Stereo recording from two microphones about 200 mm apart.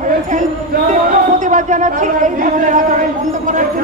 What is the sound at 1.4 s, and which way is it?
A man's voice, 40° right (ahead or behind).